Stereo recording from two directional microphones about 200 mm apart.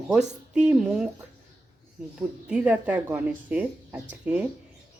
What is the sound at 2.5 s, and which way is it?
A woman's voice, 5° right (ahead or behind).